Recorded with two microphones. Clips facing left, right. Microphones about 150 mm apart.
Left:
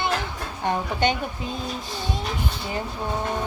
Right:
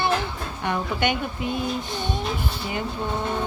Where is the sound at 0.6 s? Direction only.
35° left (ahead or behind).